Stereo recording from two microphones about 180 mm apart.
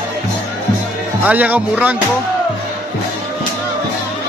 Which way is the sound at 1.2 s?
10° right (ahead or behind).